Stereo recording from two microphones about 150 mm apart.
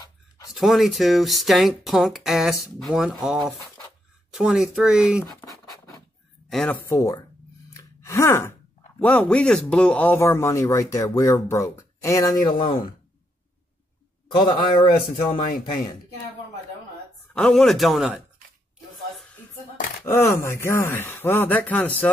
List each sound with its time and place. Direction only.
0.5 s speech: centre (ahead or behind)
5.2 s scratch: 20° left (ahead or behind)
6.5 s speech: 5° left (ahead or behind)
6.9 s speech: 20° left (ahead or behind)
7.7 s sigh: 20° left (ahead or behind)
9.0 s speech: 10° left (ahead or behind); by 12.8 s 30° left (ahead or behind)
14.3 s a man's voice: 30° left (ahead or behind)
17.3 s speech: 5° left (ahead or behind)
20.1 s speech: 20° left (ahead or behind)